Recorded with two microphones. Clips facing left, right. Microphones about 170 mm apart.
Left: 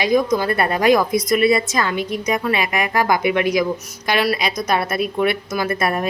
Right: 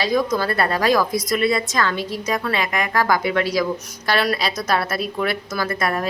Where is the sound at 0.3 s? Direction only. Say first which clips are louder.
Left 2 dB; 20° left (ahead or behind).